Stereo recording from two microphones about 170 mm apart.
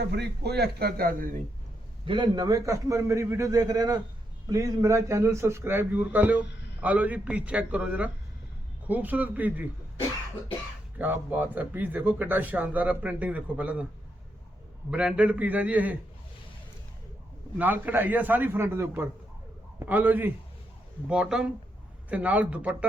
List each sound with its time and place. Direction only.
0.1 s a man's voice: 75° right (ahead or behind); by 1.4 s 55° right (ahead or behind)
2.0 s a man's voice: 30° right (ahead or behind); by 9.6 s 10° right (ahead or behind)
10.9 s a man's voice: 10° right (ahead or behind)
14.8 s a man's voice: 5° right (ahead or behind)
17.6 s a man's voice: 10° right (ahead or behind)